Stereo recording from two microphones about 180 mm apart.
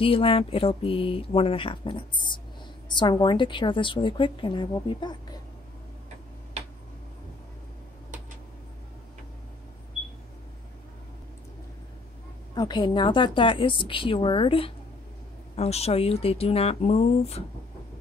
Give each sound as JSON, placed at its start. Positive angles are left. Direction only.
{"t": 0.0, "sound": "a woman's voice", "side_deg": 30}
{"t": 12.5, "sound": "a woman's voice", "side_deg": 25}